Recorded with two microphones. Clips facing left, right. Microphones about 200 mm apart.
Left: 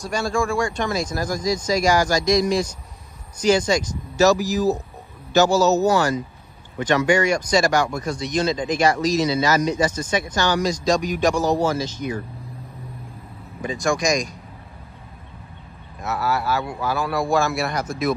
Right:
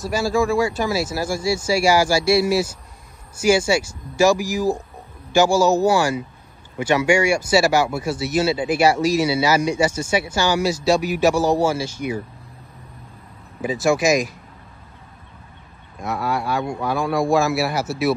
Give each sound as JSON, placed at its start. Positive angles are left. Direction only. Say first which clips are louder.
{"t": 0.0, "sound": "speech", "louder": "right 3 dB", "side_deg": -5}
{"t": 13.6, "sound": "speech", "louder": "right 4 dB", "side_deg": -5}
{"t": 16.0, "sound": "speech", "louder": "even", "side_deg": 5}